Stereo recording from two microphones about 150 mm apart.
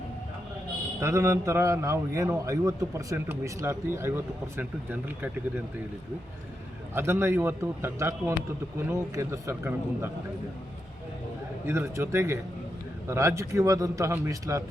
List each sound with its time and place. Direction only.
0.9 s a man's voice: 20° right (ahead or behind)
6.9 s speech: 15° right (ahead or behind)
11.6 s a man's voice: 15° right (ahead or behind)